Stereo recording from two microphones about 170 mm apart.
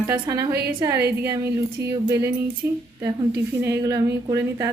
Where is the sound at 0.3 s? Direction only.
20° right (ahead or behind).